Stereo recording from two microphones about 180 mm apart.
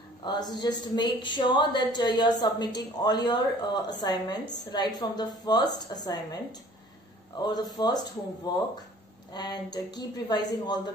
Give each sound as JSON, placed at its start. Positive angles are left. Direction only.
{"t": 0.2, "sound": "a woman's voice", "side_deg": 25}
{"t": 7.4, "sound": "a woman's voice", "side_deg": 25}